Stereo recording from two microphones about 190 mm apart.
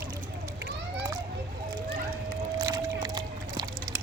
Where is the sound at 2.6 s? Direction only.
20° right (ahead or behind).